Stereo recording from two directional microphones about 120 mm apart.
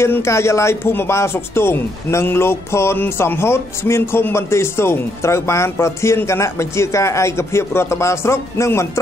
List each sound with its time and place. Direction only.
0.0 s speech: 25° left (ahead or behind)